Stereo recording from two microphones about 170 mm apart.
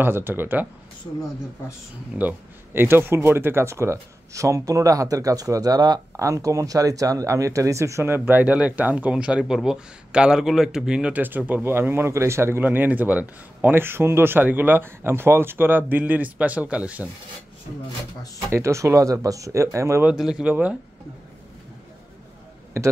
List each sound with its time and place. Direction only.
0.0 s speech: 15° right (ahead or behind)
2.1 s speech: 10° right (ahead or behind)
18.5 s speech: 15° right (ahead or behind)
22.8 s speech: 15° right (ahead or behind)